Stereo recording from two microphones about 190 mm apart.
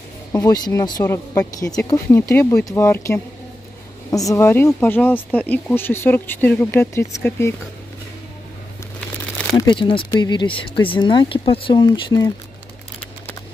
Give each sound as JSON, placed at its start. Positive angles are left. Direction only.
{"t": 0.3, "sound": "speech", "side_deg": 20}
{"t": 9.6, "sound": "speech", "side_deg": 25}